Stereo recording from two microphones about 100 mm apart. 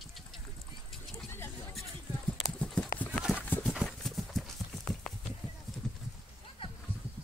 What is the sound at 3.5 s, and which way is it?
Clip-clop, 20° left (ahead or behind).